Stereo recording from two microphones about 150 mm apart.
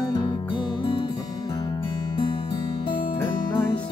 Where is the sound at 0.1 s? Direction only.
35° left (ahead or behind).